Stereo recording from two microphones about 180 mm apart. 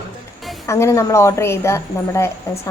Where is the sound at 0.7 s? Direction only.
15° left (ahead or behind).